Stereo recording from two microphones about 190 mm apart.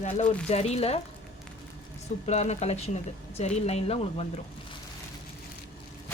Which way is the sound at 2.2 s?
35° left (ahead or behind).